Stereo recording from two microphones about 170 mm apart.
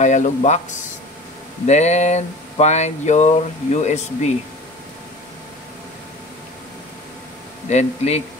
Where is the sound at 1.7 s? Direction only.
40° left (ahead or behind).